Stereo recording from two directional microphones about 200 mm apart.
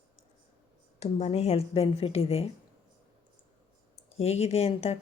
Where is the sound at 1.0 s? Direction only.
35° left (ahead or behind).